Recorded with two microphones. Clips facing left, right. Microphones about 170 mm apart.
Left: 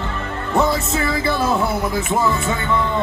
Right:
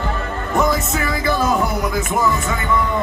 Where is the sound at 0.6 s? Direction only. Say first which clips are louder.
Even; 30° left (ahead or behind).